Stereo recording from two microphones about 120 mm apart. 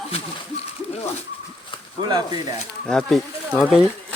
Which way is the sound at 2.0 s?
35° right (ahead or behind).